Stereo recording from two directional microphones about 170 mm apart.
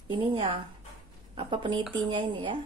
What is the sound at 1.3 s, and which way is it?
Speech, 35° right (ahead or behind).